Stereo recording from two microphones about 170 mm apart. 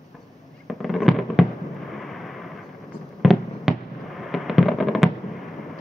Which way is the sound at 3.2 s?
Centre (ahead or behind).